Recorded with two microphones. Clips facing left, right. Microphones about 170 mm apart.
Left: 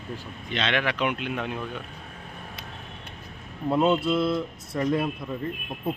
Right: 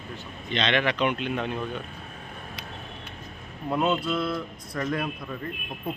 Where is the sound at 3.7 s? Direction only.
25° left (ahead or behind).